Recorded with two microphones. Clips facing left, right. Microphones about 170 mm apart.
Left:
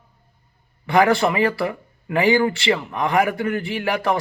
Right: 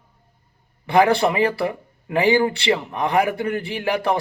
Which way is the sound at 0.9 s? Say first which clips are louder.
Even; 20° right (ahead or behind).